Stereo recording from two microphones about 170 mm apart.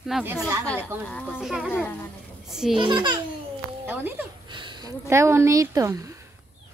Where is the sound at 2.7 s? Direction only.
30° right (ahead or behind).